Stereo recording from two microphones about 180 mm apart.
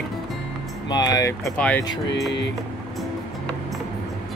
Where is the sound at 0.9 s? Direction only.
20° left (ahead or behind).